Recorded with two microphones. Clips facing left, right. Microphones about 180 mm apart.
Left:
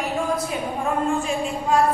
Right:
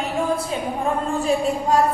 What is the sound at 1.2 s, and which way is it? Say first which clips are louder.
Speech: right 5 dB; 40° right (ahead or behind).